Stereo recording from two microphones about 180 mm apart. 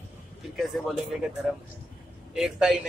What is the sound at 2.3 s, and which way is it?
Speech, 5° right (ahead or behind).